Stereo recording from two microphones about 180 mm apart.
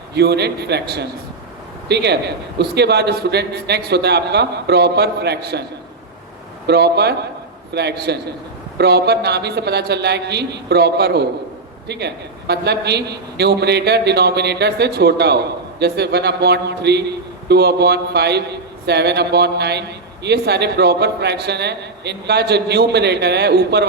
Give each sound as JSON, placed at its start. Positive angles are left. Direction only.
{"t": 0.1, "sound": "a man's voice", "side_deg": -70}
{"t": 6.7, "sound": "a man's voice", "side_deg": -65}